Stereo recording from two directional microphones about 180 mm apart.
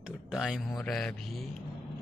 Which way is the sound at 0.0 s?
5° right (ahead or behind).